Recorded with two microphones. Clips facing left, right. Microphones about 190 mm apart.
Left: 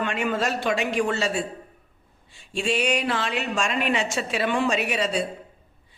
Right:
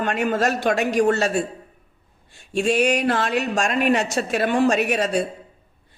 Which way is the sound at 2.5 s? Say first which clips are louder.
Right 5 dB; 45° right (ahead or behind).